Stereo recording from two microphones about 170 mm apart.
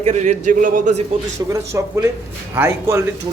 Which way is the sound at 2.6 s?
15° right (ahead or behind).